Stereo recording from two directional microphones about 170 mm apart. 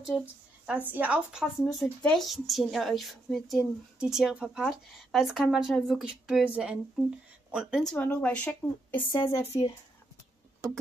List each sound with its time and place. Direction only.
0.0 s a woman's voice: 5° right (ahead or behind); by 9.8 s 20° left (ahead or behind)